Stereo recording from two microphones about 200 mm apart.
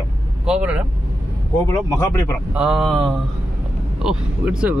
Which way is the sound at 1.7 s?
15° left (ahead or behind).